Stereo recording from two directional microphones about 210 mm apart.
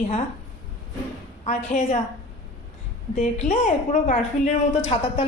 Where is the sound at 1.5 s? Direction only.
35° left (ahead or behind).